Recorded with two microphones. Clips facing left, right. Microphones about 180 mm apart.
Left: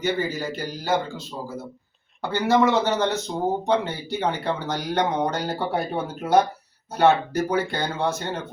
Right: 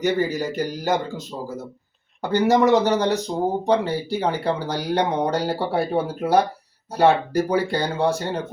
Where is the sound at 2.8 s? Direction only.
15° right (ahead or behind).